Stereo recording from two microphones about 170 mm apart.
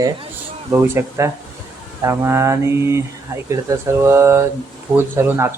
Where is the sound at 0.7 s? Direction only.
15° right (ahead or behind).